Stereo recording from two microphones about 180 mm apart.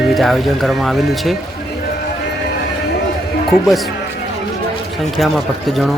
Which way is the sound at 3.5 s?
Centre (ahead or behind).